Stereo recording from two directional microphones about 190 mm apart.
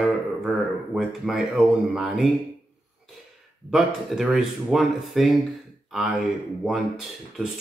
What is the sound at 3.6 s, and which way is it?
Speech, centre (ahead or behind).